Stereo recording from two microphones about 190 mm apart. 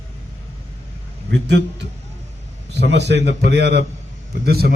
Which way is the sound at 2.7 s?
65° right (ahead or behind).